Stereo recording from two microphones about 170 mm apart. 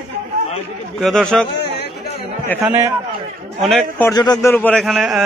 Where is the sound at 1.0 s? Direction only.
5° left (ahead or behind).